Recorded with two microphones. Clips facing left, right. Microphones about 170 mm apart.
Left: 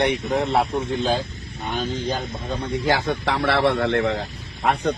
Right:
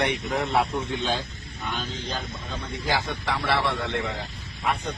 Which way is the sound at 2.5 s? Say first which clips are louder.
Left 8 dB; 65° left (ahead or behind).